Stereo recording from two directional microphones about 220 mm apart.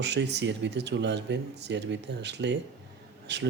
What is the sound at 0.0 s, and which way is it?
Speech, 50° right (ahead or behind).